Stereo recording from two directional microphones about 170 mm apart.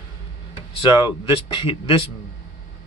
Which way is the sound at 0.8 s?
30° left (ahead or behind).